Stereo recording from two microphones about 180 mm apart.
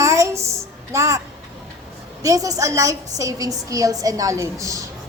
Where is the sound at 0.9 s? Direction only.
15° right (ahead or behind).